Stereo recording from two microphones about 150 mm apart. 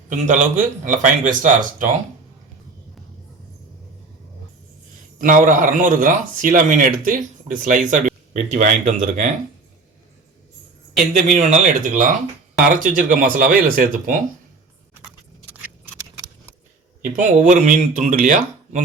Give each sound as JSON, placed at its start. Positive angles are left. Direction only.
{"t": 0.1, "sound": "speech", "side_deg": -55}
{"t": 5.2, "sound": "speech", "side_deg": -60}
{"t": 11.3, "sound": "speech", "side_deg": -55}
{"t": 17.2, "sound": "speech", "side_deg": -60}